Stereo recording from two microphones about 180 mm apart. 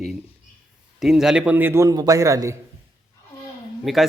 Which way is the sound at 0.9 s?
Centre (ahead or behind).